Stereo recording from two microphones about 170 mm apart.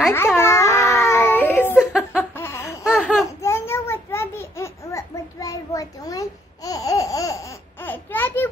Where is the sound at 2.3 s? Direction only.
15° left (ahead or behind).